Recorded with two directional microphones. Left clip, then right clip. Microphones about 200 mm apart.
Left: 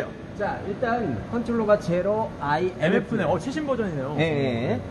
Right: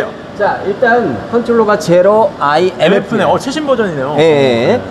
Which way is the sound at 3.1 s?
10° right (ahead or behind).